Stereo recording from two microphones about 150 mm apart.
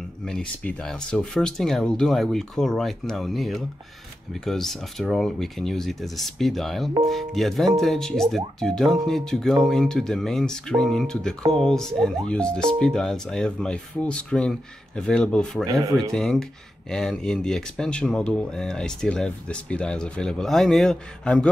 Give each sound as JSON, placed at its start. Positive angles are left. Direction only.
{"t": 0.2, "sound": "speech", "side_deg": 5}